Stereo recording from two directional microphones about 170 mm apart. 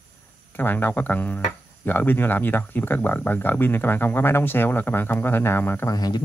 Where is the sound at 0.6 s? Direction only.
10° left (ahead or behind).